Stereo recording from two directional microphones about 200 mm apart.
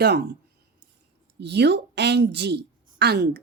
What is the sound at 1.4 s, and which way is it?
A woman's voice, 60° right (ahead or behind).